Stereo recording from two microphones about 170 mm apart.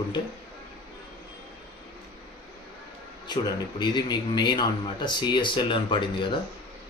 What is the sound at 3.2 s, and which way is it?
A man's voice, 25° left (ahead or behind).